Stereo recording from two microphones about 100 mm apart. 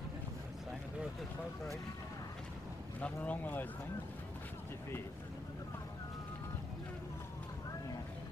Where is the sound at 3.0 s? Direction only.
15° left (ahead or behind).